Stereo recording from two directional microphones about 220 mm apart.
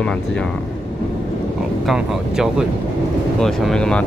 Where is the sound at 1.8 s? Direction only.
Centre (ahead or behind).